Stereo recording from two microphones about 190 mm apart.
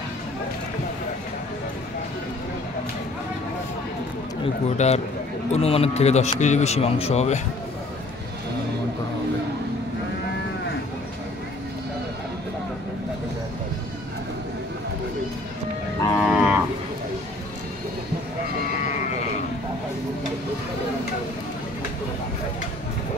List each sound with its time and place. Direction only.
4.7 s speech: 35° left (ahead or behind)
16.2 s moo: 5° right (ahead or behind)